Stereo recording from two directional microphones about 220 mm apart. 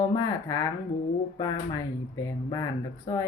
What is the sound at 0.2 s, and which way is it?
Speech, 15° left (ahead or behind).